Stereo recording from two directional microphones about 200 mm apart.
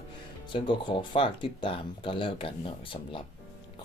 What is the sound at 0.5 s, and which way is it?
Speech, 25° left (ahead or behind).